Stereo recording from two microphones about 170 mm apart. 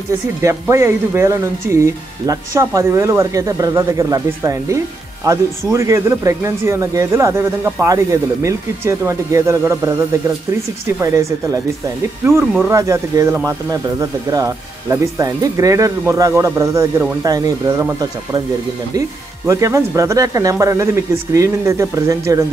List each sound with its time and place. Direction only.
0.4 s speech: 15° right (ahead or behind)
11.0 s speech: 15° right (ahead or behind)
12.6 s speech: 15° right (ahead or behind)